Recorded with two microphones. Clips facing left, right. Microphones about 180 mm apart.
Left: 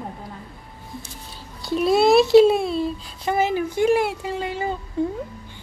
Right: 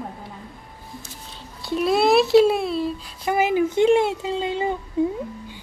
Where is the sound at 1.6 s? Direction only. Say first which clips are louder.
Left 2 dB; centre (ahead or behind).